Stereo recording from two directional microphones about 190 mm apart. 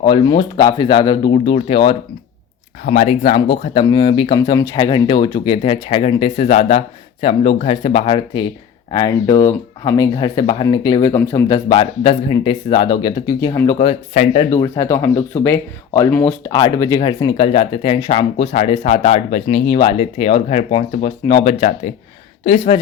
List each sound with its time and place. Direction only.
0.0 s speech: 25° left (ahead or behind)
2.8 s speech: 40° left (ahead or behind); by 13.7 s 20° left (ahead or behind)
13.7 s speech: 35° left (ahead or behind)
14.5 s speech: 15° left (ahead or behind)
16.5 s speech: 20° left (ahead or behind)